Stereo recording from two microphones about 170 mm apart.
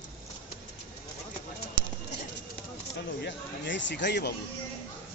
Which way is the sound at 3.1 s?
90° left.